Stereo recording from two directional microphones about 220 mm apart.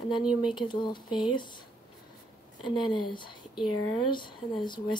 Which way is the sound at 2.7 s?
20° left (ahead or behind).